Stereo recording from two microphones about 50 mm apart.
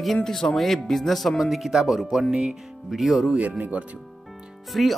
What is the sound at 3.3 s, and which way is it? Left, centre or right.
Speech, right.